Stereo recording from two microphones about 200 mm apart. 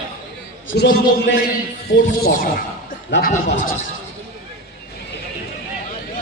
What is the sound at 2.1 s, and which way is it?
A man's voice, 45° left (ahead or behind).